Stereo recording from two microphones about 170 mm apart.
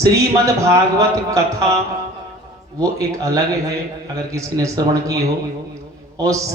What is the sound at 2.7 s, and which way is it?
A man's voice, 20° right (ahead or behind).